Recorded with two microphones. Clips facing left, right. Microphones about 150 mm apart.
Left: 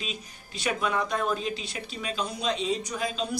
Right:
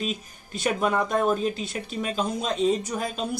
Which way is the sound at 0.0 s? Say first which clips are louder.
Right 7 dB; 45° right (ahead or behind).